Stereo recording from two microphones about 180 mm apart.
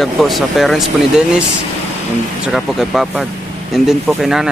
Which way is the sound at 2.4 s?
Centre (ahead or behind).